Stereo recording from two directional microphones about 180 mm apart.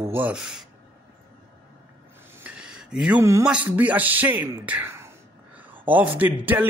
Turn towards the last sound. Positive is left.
turn(degrees=-10)  # may be behind; listen again after turning